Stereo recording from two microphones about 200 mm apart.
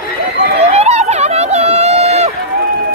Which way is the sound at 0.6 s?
30° right (ahead or behind).